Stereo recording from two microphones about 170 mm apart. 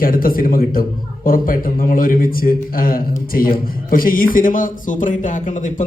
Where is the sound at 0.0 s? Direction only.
55° left (ahead or behind).